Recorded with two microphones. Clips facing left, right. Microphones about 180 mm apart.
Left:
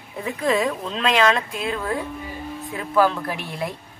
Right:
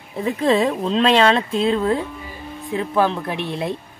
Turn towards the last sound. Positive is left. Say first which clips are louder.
# right 4 dB
turn(degrees=-25)  # may be behind; listen again after turning